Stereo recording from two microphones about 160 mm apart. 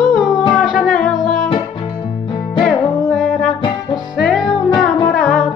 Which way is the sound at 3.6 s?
30° left (ahead or behind).